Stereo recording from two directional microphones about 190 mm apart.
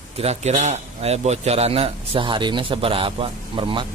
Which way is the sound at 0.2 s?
35° right (ahead or behind).